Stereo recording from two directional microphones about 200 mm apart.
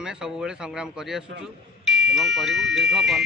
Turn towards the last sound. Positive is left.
turn(degrees=0)  # may be behind; listen again after turning